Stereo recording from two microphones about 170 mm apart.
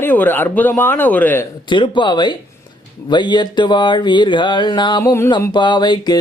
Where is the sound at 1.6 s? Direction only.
30° left (ahead or behind).